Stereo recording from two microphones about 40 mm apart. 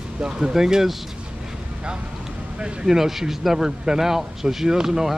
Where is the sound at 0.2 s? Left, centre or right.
Centre.